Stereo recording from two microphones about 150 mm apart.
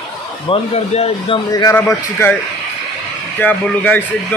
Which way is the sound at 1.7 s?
10° left (ahead or behind).